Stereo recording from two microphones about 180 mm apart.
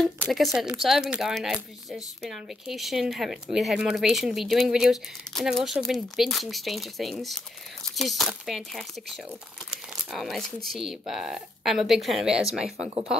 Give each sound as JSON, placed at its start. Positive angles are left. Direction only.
{"t": 0.2, "sound": "speech", "side_deg": 0}